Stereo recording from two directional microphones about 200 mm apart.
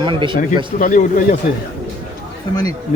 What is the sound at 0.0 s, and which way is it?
Speech, 25° right (ahead or behind).